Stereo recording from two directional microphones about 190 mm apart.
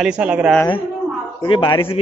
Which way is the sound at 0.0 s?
5° right (ahead or behind).